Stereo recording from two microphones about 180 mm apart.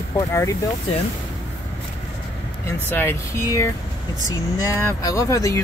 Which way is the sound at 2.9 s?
10° left (ahead or behind).